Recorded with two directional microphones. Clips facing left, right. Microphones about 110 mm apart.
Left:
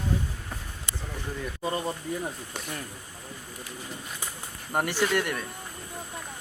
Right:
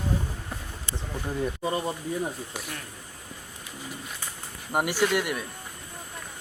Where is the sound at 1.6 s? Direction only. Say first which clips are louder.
Right 1 dB; 10° right (ahead or behind).